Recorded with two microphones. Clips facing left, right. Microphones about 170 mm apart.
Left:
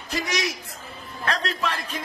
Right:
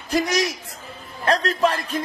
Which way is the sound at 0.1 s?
40° right (ahead or behind).